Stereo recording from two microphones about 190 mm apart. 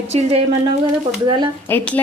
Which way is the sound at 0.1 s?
35° right (ahead or behind).